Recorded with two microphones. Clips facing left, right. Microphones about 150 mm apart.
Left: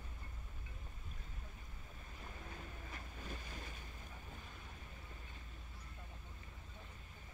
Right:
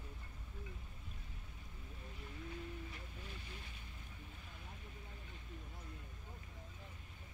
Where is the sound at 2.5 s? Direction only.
45° left (ahead or behind).